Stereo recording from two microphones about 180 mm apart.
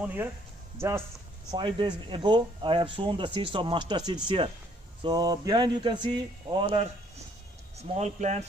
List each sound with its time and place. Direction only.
0.0 s speech: 10° right (ahead or behind)
1.5 s speech: 25° right (ahead or behind)
7.7 s speech: 35° right (ahead or behind)